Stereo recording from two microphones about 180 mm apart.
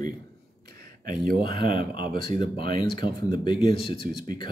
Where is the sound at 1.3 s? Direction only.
30° left (ahead or behind).